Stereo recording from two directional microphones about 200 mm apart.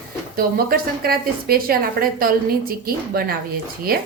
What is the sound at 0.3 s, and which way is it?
A woman's voice, 50° right (ahead or behind).